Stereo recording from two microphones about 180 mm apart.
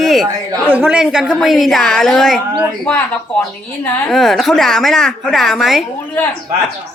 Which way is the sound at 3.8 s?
5° left (ahead or behind).